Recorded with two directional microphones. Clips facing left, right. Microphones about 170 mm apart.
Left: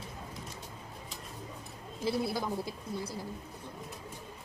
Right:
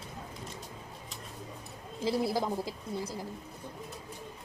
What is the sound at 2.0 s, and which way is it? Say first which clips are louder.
Speech: right 2 dB; 20° right (ahead or behind).